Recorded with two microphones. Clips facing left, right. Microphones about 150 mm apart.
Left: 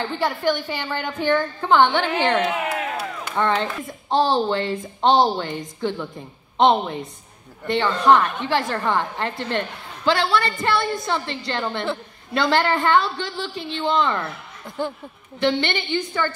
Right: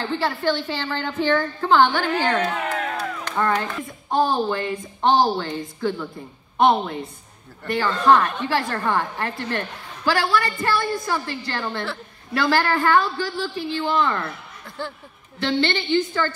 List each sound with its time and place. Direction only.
0.1 s a woman's voice: 15° left (ahead or behind)
2.5 s crowd: 10° left (ahead or behind)
3.3 s a woman's voice: 25° left (ahead or behind)
15.3 s a woman's voice: 15° left (ahead or behind)